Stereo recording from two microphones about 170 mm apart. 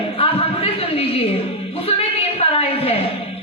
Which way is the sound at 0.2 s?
35° left (ahead or behind).